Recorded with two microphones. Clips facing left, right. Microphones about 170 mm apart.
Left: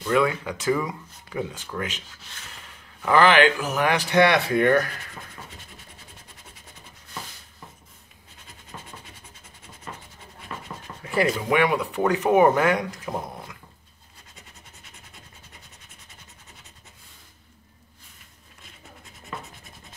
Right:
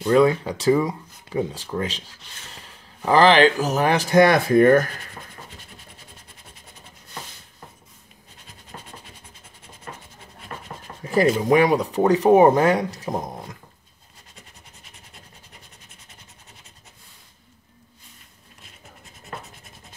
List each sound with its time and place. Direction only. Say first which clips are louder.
0.0 s speech: right 6 dB; 35° right (ahead or behind)
3.1 s speech: right 3 dB; 35° right (ahead or behind)
11.4 s speech: right 5 dB; 40° right (ahead or behind)